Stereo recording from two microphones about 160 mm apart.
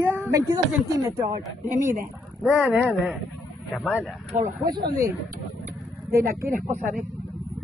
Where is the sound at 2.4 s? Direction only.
5° right (ahead or behind).